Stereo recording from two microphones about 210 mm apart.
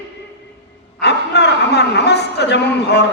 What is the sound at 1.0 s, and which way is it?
A man's voice, 55° left (ahead or behind).